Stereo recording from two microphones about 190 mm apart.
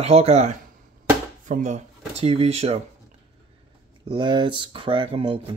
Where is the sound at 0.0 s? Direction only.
35° right (ahead or behind).